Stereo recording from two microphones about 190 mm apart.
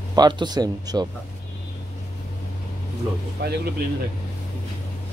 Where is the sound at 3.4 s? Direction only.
60° right (ahead or behind).